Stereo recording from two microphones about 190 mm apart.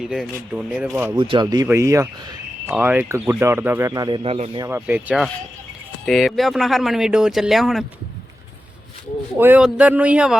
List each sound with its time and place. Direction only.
0.0 s speech: 5° right (ahead or behind)
1.1 s speech: 25° right (ahead or behind)
4.2 s speech: 35° right (ahead or behind)
4.6 s speech: 10° right (ahead or behind)
9.4 s speech: 5° right (ahead or behind)